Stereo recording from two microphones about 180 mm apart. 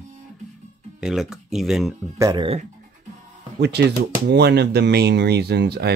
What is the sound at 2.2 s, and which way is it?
Speech, 20° right (ahead or behind).